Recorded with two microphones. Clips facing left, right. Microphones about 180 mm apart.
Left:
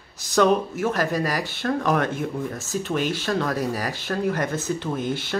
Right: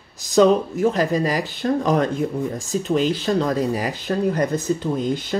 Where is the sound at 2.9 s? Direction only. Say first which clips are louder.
Right 5 dB; 20° right (ahead or behind).